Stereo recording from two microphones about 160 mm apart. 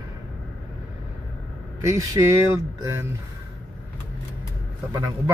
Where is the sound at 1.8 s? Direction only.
20° right (ahead or behind).